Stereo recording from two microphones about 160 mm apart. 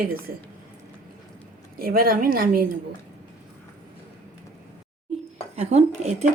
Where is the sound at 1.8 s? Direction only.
65° right (ahead or behind).